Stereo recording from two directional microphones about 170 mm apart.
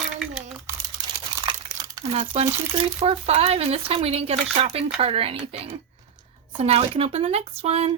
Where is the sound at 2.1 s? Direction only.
35° right (ahead or behind).